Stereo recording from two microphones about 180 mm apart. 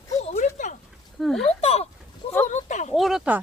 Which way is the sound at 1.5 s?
35° left (ahead or behind).